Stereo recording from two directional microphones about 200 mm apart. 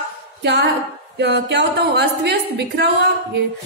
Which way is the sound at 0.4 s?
55° right (ahead or behind).